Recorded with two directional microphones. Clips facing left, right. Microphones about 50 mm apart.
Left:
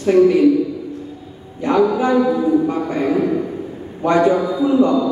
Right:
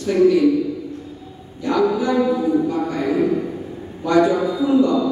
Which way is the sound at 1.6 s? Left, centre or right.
Left.